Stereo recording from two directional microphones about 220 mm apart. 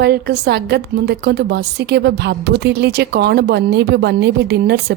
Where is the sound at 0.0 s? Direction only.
45° right (ahead or behind).